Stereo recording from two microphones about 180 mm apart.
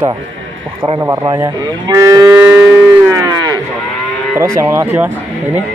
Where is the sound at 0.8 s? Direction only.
15° right (ahead or behind).